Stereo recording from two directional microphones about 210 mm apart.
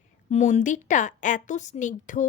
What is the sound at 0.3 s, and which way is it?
Speech, 35° left (ahead or behind).